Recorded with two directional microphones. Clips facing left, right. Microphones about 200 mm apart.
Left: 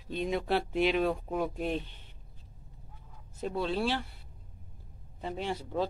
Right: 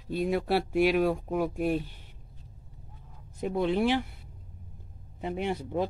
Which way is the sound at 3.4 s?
15° right (ahead or behind).